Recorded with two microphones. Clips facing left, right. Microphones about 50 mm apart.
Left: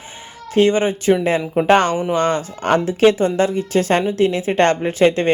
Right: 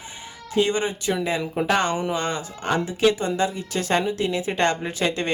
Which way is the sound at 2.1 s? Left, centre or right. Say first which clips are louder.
Left 8 dB; left.